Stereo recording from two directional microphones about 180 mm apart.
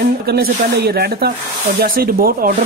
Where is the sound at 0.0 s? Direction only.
55° right (ahead or behind).